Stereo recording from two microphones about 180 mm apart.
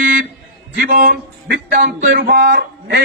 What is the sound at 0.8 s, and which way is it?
Speech, 50° right (ahead or behind).